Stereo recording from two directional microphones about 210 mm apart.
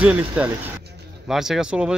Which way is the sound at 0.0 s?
5° right (ahead or behind).